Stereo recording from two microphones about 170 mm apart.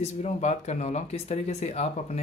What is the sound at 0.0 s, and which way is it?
Speech, 40° left (ahead or behind).